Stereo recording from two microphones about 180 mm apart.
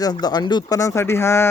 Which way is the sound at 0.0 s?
20° left (ahead or behind).